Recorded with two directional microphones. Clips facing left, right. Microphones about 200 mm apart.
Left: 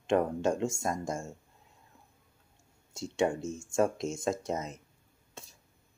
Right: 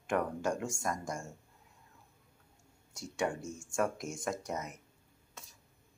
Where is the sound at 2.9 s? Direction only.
25° left (ahead or behind).